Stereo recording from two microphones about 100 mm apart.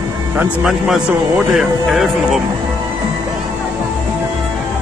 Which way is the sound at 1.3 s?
5° right (ahead or behind).